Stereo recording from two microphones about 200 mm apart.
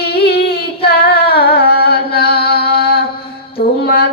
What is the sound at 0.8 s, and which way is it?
Singing, 50° left (ahead or behind).